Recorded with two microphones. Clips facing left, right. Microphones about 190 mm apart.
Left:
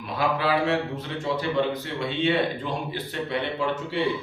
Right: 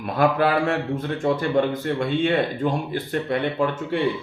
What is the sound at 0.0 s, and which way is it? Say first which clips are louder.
A man's voice: right 6 dB; 50° right (ahead or behind).